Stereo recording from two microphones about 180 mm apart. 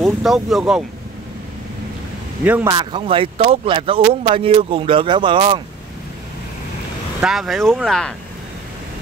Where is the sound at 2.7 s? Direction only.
25° right (ahead or behind).